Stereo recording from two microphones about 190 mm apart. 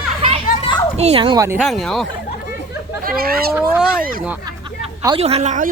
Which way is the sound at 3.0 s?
50° right (ahead or behind).